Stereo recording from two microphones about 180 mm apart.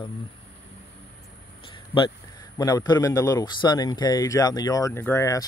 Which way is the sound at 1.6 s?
25° left (ahead or behind).